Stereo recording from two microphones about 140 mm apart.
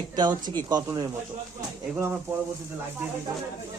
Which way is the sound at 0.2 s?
30° right (ahead or behind).